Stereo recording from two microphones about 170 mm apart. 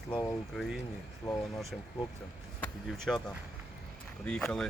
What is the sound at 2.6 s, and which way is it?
Speech, 5° left (ahead or behind).